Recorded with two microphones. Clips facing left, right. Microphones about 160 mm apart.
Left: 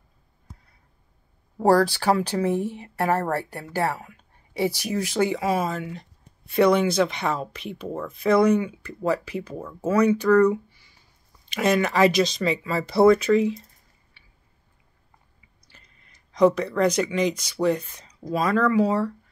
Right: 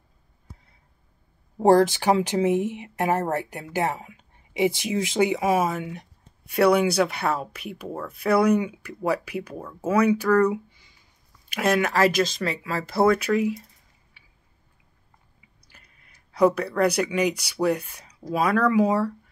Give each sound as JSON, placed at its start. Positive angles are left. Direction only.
{"t": 1.6, "sound": "speech", "side_deg": -20}
{"t": 10.7, "sound": "a sound", "side_deg": -20}
{"t": 11.4, "sound": "speech", "side_deg": -5}
{"t": 15.7, "sound": "speech", "side_deg": -10}